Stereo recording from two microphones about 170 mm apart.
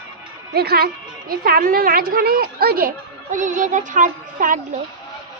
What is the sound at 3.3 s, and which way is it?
A child's voice, 45° right (ahead or behind).